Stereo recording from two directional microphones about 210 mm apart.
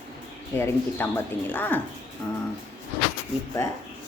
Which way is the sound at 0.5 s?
10° left (ahead or behind).